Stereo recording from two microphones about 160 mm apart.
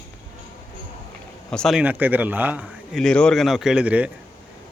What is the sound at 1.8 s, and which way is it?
A man's voice, 10° right (ahead or behind).